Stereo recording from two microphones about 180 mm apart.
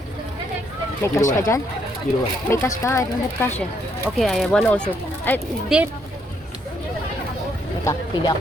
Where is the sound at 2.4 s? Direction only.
15° left (ahead or behind).